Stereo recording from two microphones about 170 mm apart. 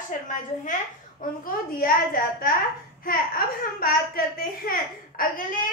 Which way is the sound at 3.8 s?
60° left (ahead or behind).